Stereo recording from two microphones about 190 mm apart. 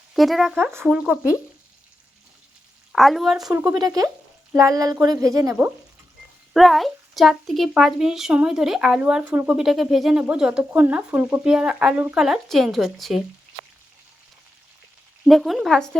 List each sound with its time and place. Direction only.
0.1 s speech: centre (ahead or behind)
2.9 s speech: centre (ahead or behind)
3.5 s speech: 15° right (ahead or behind)
6.5 s speech: centre (ahead or behind)
15.2 s speech: centre (ahead or behind)